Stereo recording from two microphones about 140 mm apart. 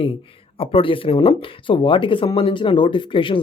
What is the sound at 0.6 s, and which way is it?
Speech, 40° left (ahead or behind).